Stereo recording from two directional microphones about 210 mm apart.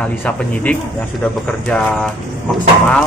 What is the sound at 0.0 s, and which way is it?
Speech, 5° left (ahead or behind).